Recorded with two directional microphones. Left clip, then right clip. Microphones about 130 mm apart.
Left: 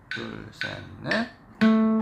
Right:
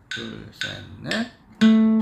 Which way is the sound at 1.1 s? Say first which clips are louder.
Left 1 dB; 65° right (ahead or behind).